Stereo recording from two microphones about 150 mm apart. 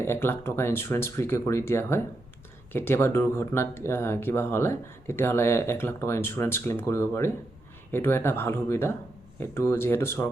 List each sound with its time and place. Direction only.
0.0 s speech: 15° left (ahead or behind)